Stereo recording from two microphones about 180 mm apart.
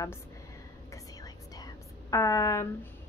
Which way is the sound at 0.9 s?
20° left (ahead or behind).